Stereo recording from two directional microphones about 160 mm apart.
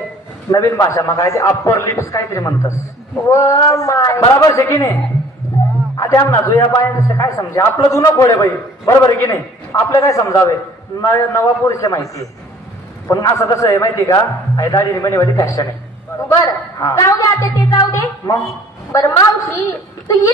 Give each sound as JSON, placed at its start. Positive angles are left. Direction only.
{"t": 0.5, "sound": "a man's voice", "side_deg": 20}